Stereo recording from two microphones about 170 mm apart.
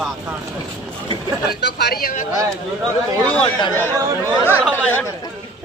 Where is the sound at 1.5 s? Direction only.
65° left (ahead or behind).